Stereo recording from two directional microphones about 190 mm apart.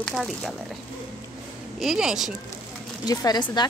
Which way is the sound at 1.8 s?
Centre (ahead or behind).